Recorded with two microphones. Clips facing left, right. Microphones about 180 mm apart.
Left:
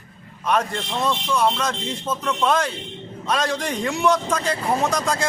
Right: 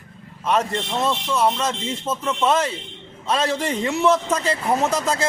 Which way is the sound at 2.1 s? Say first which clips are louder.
Right 1 dB; 25° right (ahead or behind).